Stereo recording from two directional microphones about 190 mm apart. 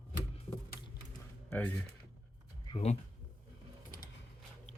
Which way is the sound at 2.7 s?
35° left (ahead or behind).